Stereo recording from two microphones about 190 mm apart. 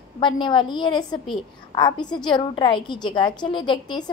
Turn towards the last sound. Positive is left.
turn(degrees=25)  # may be behind; listen again after turning